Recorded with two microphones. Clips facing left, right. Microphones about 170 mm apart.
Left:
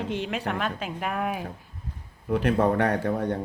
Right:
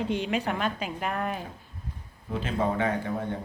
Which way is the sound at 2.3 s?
70° left (ahead or behind).